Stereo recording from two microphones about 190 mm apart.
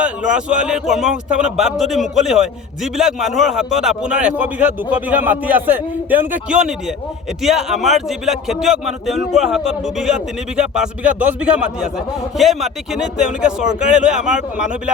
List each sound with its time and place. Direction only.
0.0 s a man's voice: 5° right (ahead or behind)